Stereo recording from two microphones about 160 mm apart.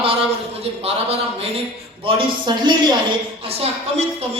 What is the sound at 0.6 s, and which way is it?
Speech, 40° right (ahead or behind).